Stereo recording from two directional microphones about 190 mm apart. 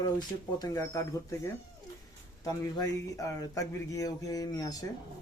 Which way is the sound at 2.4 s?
20° left (ahead or behind).